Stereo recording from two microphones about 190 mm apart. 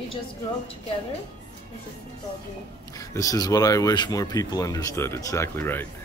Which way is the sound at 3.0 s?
15° left (ahead or behind).